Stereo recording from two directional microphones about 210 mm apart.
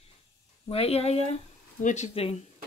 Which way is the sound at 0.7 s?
30° left (ahead or behind).